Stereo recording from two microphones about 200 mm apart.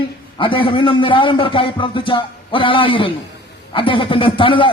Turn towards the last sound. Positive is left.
turn(degrees=25)  # may be behind; listen again after turning